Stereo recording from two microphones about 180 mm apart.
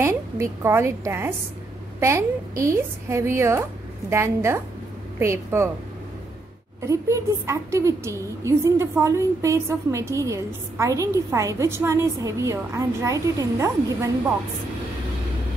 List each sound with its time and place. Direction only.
0.0 s a woman's voice: 15° right (ahead or behind)
6.8 s a woman's voice: 15° right (ahead or behind)